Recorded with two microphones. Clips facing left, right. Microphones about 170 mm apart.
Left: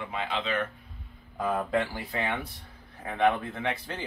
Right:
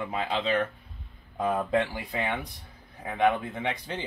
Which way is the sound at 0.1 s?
35° right (ahead or behind).